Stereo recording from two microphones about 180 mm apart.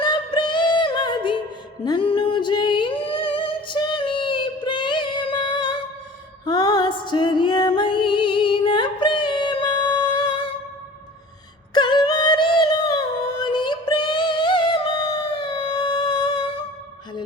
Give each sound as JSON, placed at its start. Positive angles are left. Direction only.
{"t": 0.0, "sound": "music", "side_deg": 25}
{"t": 11.7, "sound": "music", "side_deg": 25}